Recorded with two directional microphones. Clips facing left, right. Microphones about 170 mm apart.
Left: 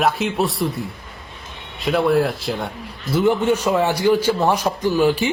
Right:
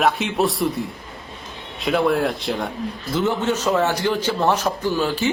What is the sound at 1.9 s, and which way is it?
Speech, centre (ahead or behind).